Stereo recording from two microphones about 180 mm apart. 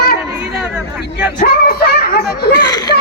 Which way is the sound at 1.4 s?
55° left (ahead or behind).